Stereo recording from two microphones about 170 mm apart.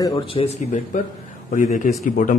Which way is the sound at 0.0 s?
30° left (ahead or behind).